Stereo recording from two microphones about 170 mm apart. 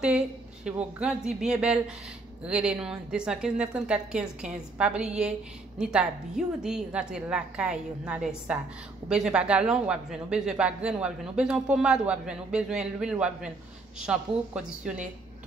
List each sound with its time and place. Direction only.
0.0 s a man's voice: 5° right (ahead or behind)